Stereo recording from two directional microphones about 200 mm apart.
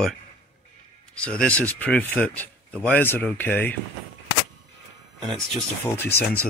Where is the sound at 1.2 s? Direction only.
5° left (ahead or behind).